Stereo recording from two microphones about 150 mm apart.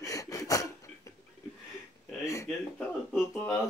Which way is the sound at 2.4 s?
Centre (ahead or behind).